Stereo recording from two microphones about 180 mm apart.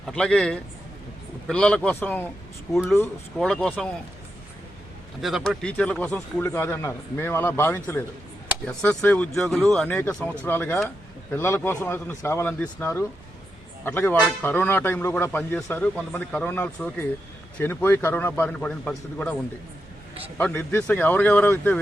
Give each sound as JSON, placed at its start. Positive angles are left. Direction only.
{"t": 0.0, "sound": "speech", "side_deg": 5}
{"t": 3.3, "sound": "speech", "side_deg": 5}
{"t": 5.2, "sound": "speech", "side_deg": 0}
{"t": 20.4, "sound": "speech", "side_deg": 10}